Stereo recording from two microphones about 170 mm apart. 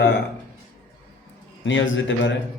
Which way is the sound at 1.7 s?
90° left.